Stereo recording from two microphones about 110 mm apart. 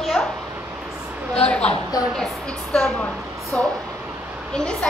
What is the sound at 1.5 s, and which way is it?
A woman's voice, 10° left (ahead or behind).